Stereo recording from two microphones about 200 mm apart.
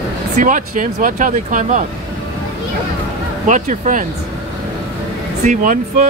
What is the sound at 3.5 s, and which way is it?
Speech, 40° right (ahead or behind).